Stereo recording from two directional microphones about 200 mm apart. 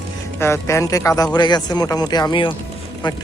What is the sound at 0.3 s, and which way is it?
Speech, 15° left (ahead or behind).